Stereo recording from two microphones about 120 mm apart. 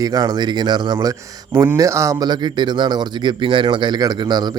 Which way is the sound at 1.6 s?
25° right (ahead or behind).